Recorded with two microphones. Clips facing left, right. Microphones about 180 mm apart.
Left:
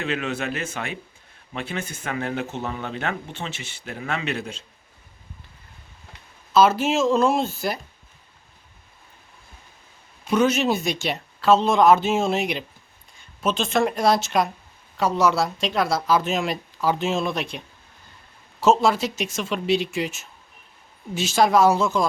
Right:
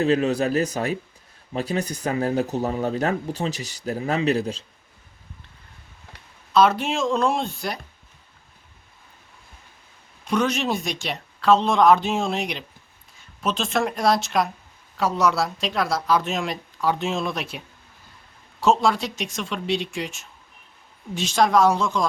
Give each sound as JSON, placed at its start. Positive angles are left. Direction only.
{"t": 0.0, "sound": "speech", "side_deg": -35}
{"t": 6.5, "sound": "speech", "side_deg": 5}
{"t": 10.2, "sound": "speech", "side_deg": 5}
{"t": 18.6, "sound": "speech", "side_deg": 0}